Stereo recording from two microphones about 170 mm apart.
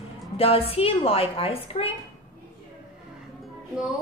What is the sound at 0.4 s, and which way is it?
A woman's voice, 35° left (ahead or behind).